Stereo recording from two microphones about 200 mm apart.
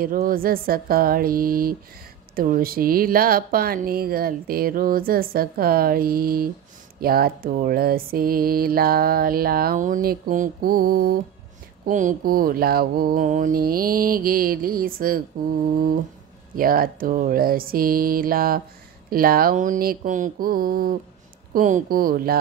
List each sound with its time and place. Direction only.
0.0 s mantra: 45° right (ahead or behind)
16.5 s mantra: 45° right (ahead or behind)